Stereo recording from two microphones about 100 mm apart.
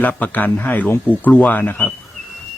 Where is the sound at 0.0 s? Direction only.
15° left (ahead or behind).